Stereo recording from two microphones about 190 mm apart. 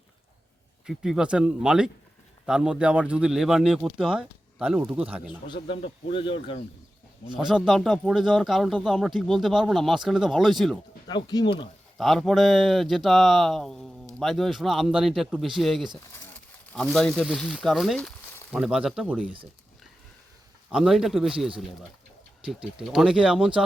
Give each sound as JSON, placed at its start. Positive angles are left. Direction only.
{"t": 0.9, "sound": "speech", "side_deg": 0}
{"t": 5.5, "sound": "speech", "side_deg": 30}
{"t": 7.3, "sound": "speech", "side_deg": 0}
{"t": 11.1, "sound": "speech", "side_deg": 20}
{"t": 11.9, "sound": "speech", "side_deg": 0}
{"t": 20.7, "sound": "speech", "side_deg": -5}